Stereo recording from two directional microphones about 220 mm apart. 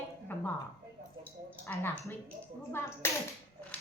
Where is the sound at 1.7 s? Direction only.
10° left (ahead or behind).